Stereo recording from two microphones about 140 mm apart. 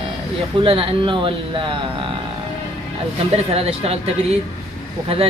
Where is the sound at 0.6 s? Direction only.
35° right (ahead or behind).